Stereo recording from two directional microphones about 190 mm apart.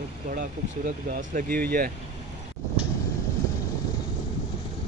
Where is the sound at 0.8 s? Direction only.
45° right (ahead or behind).